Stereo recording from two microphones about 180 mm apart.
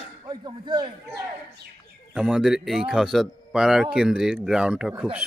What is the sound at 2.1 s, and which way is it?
A man's voice, 5° right (ahead or behind).